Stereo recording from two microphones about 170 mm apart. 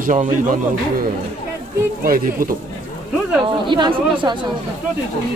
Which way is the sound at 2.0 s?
55° right (ahead or behind).